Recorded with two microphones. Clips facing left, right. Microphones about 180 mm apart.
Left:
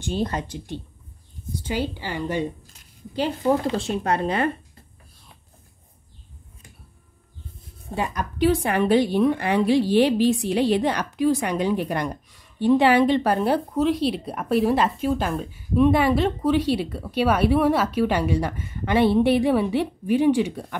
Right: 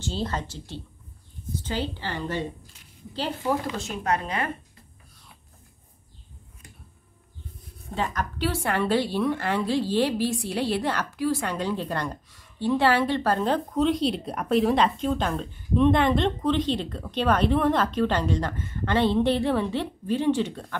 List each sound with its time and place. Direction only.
0.0 s a woman's voice: 15° left (ahead or behind)
3.6 s speech: 30° left (ahead or behind)
7.9 s a woman's voice: 10° left (ahead or behind)